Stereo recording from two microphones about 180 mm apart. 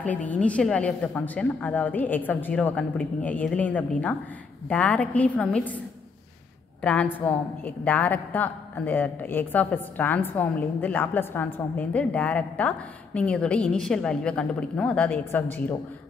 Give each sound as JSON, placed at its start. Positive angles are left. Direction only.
{"t": 0.3, "sound": "a woman's voice", "side_deg": 5}
{"t": 6.8, "sound": "a woman's voice", "side_deg": 5}